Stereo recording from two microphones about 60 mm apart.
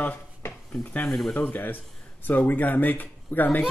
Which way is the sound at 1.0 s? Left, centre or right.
Centre.